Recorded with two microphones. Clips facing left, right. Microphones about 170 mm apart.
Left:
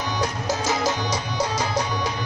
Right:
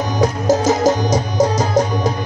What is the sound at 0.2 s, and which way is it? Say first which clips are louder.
Music: right 13 dB; 45° right (ahead or behind).